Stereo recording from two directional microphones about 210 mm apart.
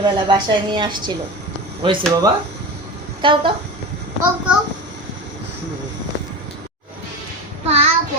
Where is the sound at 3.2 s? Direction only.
25° right (ahead or behind).